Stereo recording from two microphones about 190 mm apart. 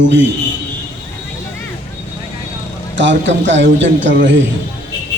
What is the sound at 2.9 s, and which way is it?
A man's voice, 75° right (ahead or behind).